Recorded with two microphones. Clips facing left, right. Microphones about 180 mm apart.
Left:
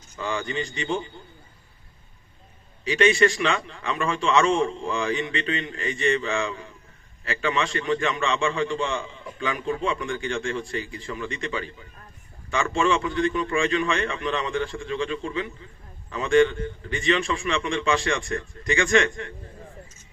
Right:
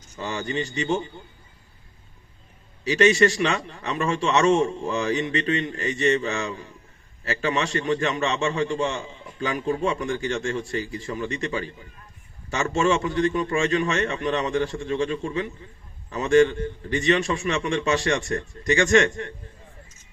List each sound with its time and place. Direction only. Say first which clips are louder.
0.2 s a man's voice: even; 40° right (ahead or behind)
2.8 s a man's voice: right 1 dB; 40° right (ahead or behind)